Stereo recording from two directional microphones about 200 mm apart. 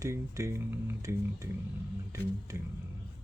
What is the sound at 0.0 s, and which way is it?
Speech, 15° right (ahead or behind).